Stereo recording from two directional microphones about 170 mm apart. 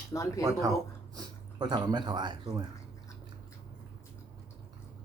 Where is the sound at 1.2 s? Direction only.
25° right (ahead or behind).